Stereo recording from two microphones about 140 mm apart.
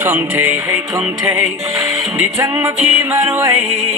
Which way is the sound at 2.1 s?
15° right (ahead or behind).